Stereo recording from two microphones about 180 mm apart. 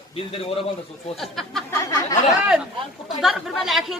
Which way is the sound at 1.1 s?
Centre (ahead or behind).